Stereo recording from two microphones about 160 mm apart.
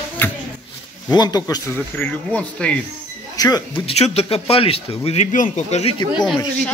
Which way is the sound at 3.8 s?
40° left (ahead or behind).